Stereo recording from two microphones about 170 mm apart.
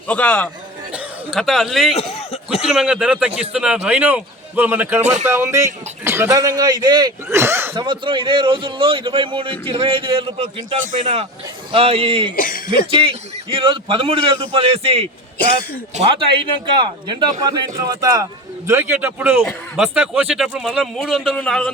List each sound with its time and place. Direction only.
0.1 s a man's voice: 10° left (ahead or behind)
2.0 s speech: 35° left (ahead or behind)
2.6 s speech: 5° right (ahead or behind)
7.8 s a man's voice: 30° right (ahead or behind)
12.4 s speech: 55° left (ahead or behind)
12.9 s a man's voice: 30° right (ahead or behind); by 21.6 s 5° left (ahead or behind)